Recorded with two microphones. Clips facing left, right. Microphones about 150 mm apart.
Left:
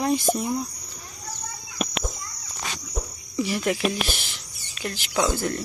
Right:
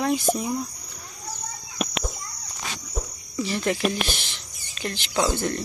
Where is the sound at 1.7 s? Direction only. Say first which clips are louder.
Even; centre (ahead or behind).